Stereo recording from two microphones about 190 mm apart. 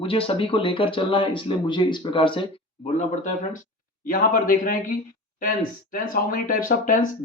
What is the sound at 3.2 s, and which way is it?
Speech, 45° left (ahead or behind).